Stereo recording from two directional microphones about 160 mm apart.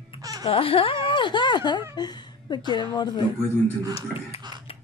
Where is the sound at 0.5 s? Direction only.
35° left (ahead or behind).